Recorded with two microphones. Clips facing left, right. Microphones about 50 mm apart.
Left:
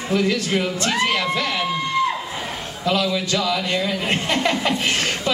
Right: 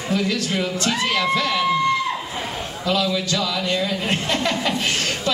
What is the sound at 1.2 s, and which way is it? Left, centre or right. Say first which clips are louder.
Speech: right 2 dB; centre.